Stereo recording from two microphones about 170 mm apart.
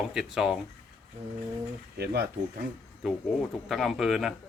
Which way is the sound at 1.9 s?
75° right (ahead or behind).